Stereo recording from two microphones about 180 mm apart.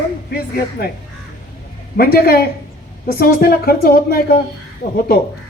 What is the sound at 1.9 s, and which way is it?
A woman's voice, 60° left (ahead or behind).